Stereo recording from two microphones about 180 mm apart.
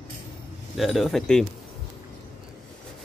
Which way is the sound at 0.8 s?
Centre (ahead or behind).